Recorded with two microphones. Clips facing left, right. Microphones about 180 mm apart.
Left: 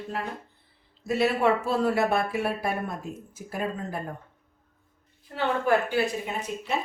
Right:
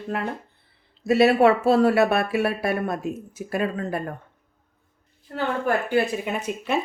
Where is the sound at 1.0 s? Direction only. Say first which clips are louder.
Right 7 dB; 70° right (ahead or behind).